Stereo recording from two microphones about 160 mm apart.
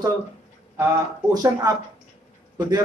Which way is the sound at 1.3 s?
25° right (ahead or behind).